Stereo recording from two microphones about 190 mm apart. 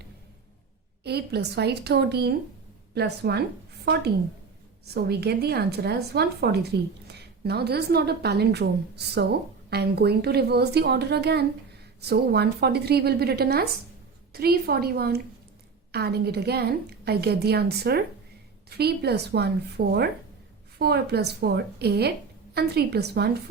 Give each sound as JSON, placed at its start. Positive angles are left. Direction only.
{"t": 1.0, "sound": "speech", "side_deg": -60}
{"t": 4.9, "sound": "speech", "side_deg": -55}